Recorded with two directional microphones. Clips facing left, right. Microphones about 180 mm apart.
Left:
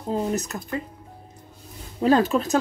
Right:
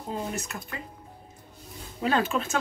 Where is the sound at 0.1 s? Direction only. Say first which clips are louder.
Left 8 dB; 40° left (ahead or behind).